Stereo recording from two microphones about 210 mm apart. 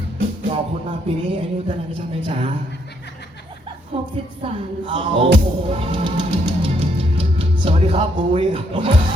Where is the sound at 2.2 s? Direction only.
25° right (ahead or behind).